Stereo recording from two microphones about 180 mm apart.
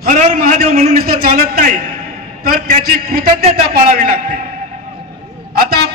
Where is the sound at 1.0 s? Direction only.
55° right (ahead or behind).